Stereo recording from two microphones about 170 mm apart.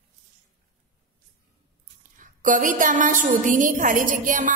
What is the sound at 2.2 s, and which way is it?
A woman's voice, 50° right (ahead or behind).